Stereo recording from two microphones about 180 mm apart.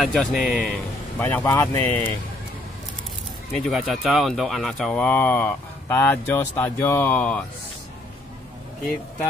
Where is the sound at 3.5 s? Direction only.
Centre (ahead or behind).